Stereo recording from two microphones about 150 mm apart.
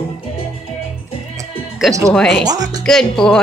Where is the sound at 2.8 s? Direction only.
5° left (ahead or behind).